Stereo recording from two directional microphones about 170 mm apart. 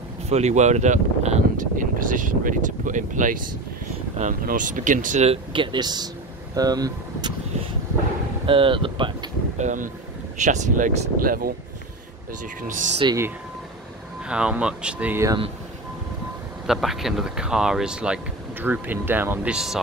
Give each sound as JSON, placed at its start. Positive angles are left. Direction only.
{"t": 0.3, "sound": "speech", "side_deg": -40}
{"t": 8.5, "sound": "speech", "side_deg": -30}
{"t": 9.6, "sound": "speech", "side_deg": -45}
{"t": 12.6, "sound": "speech", "side_deg": -50}
{"t": 13.0, "sound": "speech", "side_deg": -20}
{"t": 14.2, "sound": "speech", "side_deg": -5}
{"t": 16.6, "sound": "speech", "side_deg": 0}